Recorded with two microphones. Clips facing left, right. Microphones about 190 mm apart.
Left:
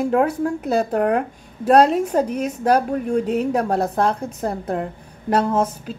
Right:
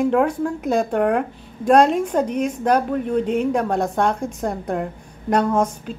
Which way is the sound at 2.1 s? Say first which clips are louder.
Left 1 dB; 5° left (ahead or behind).